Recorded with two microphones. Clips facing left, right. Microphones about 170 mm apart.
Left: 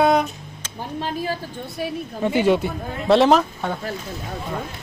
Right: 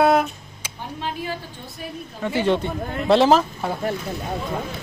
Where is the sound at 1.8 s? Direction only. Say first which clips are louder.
Left 8 dB; 90° left.